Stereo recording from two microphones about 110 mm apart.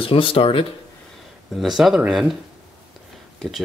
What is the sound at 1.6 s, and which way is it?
Speech, 5° right (ahead or behind).